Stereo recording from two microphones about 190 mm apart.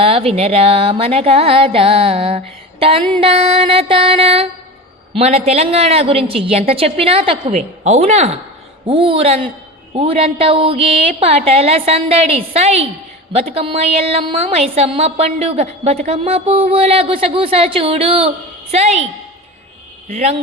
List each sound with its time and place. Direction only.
0.0 s a woman's voice: 30° right (ahead or behind)
20.1 s a man's voice: 35° right (ahead or behind)